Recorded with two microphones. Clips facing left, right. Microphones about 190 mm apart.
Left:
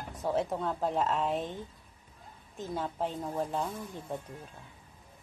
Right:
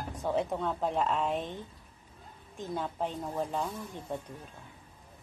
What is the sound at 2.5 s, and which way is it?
A woman's voice, 5° left (ahead or behind).